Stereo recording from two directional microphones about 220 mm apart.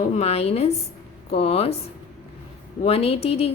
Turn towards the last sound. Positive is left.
turn(degrees=25)  # may be behind; listen again after turning